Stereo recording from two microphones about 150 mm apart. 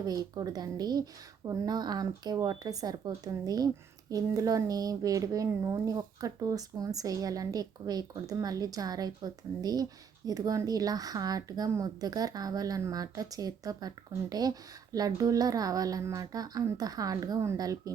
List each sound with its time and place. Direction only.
0.0 s speech: 25° right (ahead or behind)